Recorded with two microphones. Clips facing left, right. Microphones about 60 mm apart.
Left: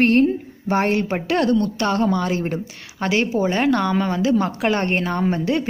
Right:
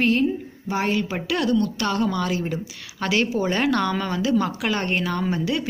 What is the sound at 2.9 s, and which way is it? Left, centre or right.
A woman's voice, left.